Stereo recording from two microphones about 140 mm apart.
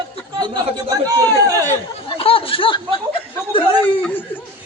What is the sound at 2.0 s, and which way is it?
Snicker, 40° left (ahead or behind).